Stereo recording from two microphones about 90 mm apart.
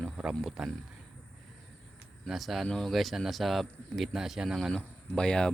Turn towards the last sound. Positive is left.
turn(degrees=10)  # may be behind; listen again after turning